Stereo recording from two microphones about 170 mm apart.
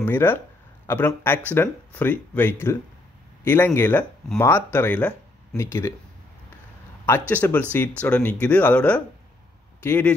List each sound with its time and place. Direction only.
0.0 s speech: 10° left (ahead or behind)
7.1 s speech: 10° left (ahead or behind)